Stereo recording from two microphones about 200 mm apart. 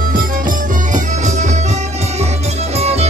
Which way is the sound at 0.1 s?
45° right (ahead or behind).